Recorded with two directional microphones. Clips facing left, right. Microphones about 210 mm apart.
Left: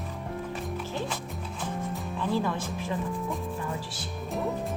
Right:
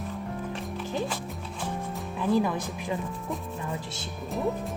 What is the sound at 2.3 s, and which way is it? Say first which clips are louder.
Speech: right 4 dB; 15° right (ahead or behind).